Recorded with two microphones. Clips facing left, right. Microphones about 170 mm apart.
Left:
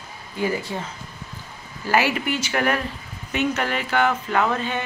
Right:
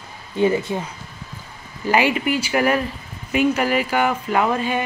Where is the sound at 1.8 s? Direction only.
15° right (ahead or behind).